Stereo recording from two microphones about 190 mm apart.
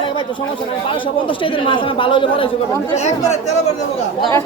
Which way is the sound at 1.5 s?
25° left (ahead or behind).